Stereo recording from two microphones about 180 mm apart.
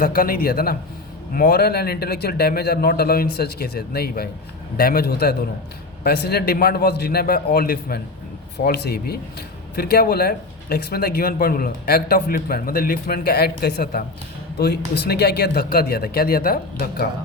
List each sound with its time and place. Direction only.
0.0 s speech: 55° left (ahead or behind)